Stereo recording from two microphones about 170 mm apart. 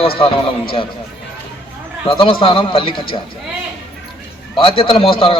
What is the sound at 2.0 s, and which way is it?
A man's voice, 30° left (ahead or behind).